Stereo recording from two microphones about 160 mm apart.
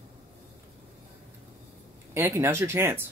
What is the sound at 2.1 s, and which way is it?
Speech, 15° right (ahead or behind).